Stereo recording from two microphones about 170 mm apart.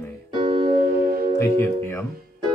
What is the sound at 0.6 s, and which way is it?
Music, 60° right (ahead or behind).